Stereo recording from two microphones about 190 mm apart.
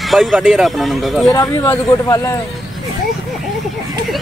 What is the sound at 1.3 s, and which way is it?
Speech, 15° left (ahead or behind).